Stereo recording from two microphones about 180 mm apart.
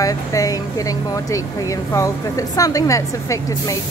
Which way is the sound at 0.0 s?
20° left (ahead or behind).